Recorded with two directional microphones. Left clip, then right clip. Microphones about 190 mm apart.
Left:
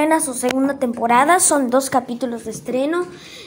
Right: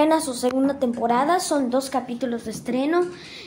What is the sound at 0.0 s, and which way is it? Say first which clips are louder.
A woman's voice: left 2 dB; 10° left (ahead or behind).